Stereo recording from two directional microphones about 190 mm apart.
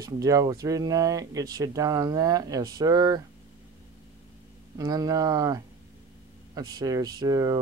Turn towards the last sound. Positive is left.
turn(degrees=-20)  # may be behind; listen again after turning